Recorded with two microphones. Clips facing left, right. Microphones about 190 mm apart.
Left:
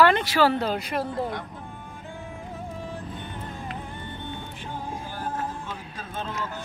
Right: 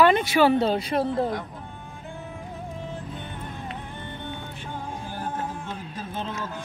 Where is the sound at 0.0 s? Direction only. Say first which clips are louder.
Right 1 dB; 15° right (ahead or behind).